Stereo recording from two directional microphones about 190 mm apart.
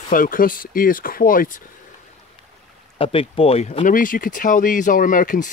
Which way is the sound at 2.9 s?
30° left (ahead or behind).